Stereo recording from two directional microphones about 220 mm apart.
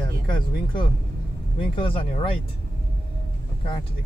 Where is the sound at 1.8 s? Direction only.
25° left (ahead or behind).